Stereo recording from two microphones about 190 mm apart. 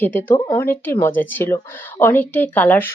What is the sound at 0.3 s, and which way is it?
Speech, 25° left (ahead or behind).